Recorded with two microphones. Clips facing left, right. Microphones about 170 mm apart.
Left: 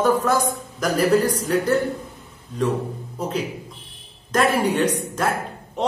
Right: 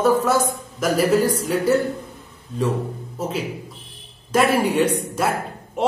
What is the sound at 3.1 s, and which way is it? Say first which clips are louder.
A man's voice: even; 5° right (ahead or behind).